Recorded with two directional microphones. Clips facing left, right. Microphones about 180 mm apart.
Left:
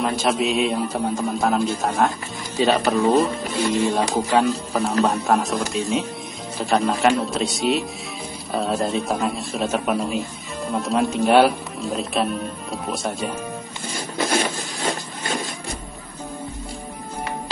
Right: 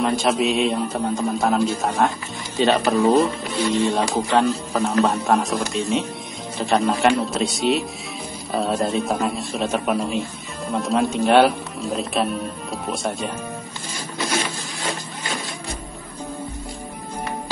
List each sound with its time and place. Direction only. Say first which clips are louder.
0.0 s speech: right 1 dB; centre (ahead or behind)
3.5 s speech: even; 50° left (ahead or behind)
4.1 s speech: even; 5° left (ahead or behind)
13.9 s rub: left 3 dB; 50° left (ahead or behind)